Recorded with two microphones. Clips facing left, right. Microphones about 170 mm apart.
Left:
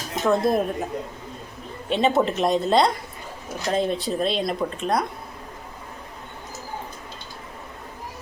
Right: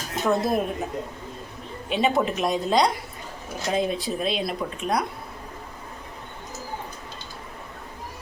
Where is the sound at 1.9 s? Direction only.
5° right (ahead or behind).